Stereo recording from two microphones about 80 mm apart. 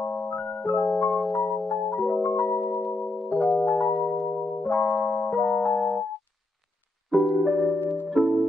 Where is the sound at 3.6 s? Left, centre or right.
Left.